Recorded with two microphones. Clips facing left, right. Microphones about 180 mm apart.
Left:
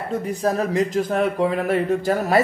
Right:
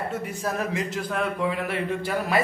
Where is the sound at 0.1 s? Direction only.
35° left (ahead or behind).